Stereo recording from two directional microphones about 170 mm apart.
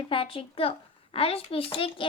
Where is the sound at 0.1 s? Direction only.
30° left (ahead or behind).